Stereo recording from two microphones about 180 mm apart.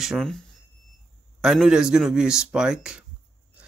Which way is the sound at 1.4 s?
5° right (ahead or behind).